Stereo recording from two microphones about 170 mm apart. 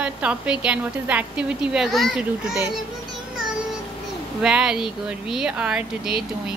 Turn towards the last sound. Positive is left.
turn(degrees=-5)  # may be behind; listen again after turning